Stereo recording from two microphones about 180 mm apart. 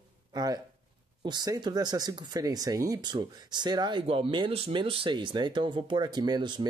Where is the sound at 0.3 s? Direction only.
20° right (ahead or behind).